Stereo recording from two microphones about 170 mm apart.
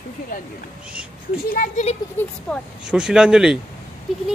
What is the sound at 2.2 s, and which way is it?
Speech, 10° left (ahead or behind).